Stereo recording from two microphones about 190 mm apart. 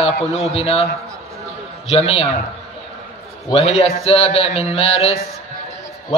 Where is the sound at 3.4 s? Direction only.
30° left (ahead or behind).